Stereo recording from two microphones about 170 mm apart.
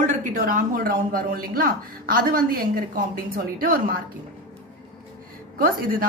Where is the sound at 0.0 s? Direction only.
50° right (ahead or behind).